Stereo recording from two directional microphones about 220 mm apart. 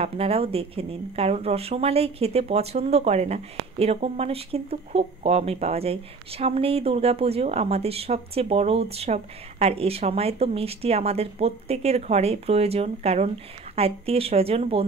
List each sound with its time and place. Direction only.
0.0 s speech: 25° right (ahead or behind)